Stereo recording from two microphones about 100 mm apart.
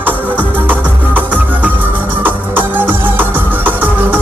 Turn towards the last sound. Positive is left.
turn(degrees=-20)  # may be behind; listen again after turning